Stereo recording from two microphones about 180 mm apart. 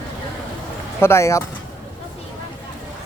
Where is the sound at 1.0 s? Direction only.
15° left (ahead or behind).